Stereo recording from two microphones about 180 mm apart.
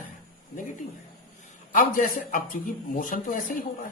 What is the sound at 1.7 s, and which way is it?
A man's voice, 50° left (ahead or behind).